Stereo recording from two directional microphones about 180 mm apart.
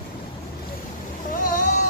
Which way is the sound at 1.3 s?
50° left (ahead or behind).